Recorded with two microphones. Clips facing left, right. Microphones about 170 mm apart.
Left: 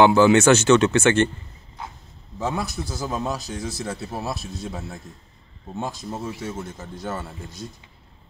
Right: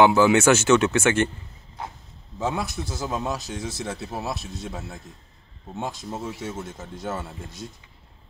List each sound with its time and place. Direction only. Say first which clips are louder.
0.0 s speech: left 2 dB; 5° right (ahead or behind)
2.3 s a man's voice: even; 5° right (ahead or behind)
2.6 s a man's voice: left 1 dB; 25° right (ahead or behind)
2.9 s speech: left 1 dB; 5° right (ahead or behind)